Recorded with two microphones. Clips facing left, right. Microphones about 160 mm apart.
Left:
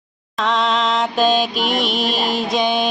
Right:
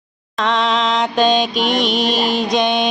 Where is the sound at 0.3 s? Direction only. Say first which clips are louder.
Right 1 dB; centre (ahead or behind).